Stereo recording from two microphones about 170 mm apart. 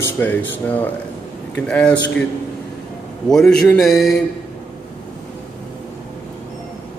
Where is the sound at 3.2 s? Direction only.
5° left (ahead or behind).